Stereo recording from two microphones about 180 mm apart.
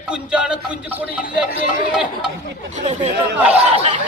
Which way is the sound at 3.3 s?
10° right (ahead or behind).